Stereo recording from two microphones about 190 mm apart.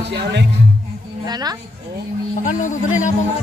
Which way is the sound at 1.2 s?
20° right (ahead or behind).